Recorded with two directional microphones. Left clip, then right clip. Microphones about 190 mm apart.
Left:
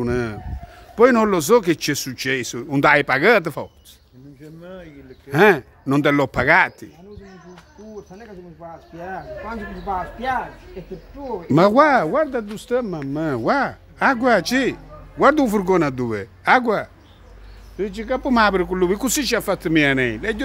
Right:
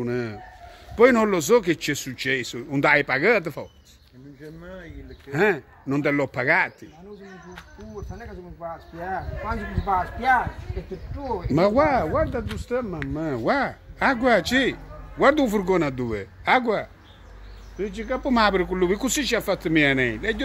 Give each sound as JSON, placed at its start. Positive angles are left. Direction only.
{"t": 0.0, "sound": "speech", "side_deg": 30}
{"t": 0.9, "sound": "speech", "side_deg": 15}
{"t": 5.3, "sound": "speech", "side_deg": 30}
{"t": 8.5, "sound": "speech", "side_deg": 0}
{"t": 11.4, "sound": "speech", "side_deg": 35}
{"t": 13.4, "sound": "speech", "side_deg": 15}